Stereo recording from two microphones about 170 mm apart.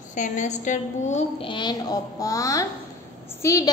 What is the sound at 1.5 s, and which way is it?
A woman's voice, 25° left (ahead or behind).